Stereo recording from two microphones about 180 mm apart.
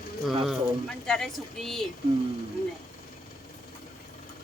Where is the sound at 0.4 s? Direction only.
Centre (ahead or behind).